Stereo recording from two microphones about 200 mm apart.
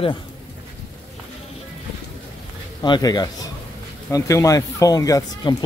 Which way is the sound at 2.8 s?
20° left (ahead or behind).